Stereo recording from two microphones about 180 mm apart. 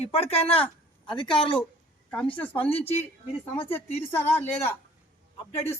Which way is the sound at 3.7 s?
35° left (ahead or behind).